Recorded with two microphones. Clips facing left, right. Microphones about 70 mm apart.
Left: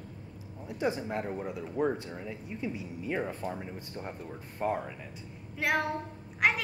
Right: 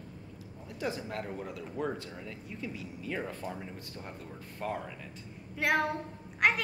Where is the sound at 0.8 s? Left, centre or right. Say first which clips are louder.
Left 4 dB; left.